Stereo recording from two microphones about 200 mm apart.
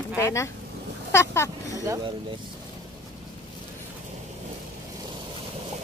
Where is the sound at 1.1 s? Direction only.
15° left (ahead or behind).